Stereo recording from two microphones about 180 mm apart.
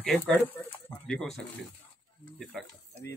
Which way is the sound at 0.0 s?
5° left (ahead or behind).